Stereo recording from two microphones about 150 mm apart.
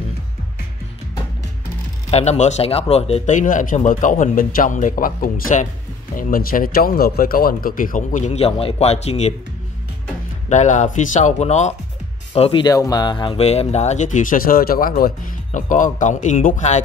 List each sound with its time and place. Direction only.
2.0 s speech: 45° left (ahead or behind)
10.5 s speech: 50° left (ahead or behind)
12.6 s speech: 25° left (ahead or behind)
13.5 s speech: 45° left (ahead or behind)